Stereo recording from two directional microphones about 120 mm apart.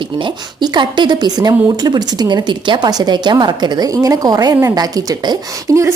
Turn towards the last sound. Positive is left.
turn(degrees=-25)  # may be behind; listen again after turning